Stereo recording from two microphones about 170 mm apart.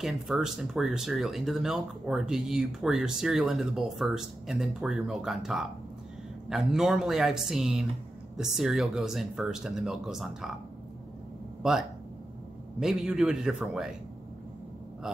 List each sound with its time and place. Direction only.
0.0 s speech: centre (ahead or behind)
12.8 s speech: centre (ahead or behind)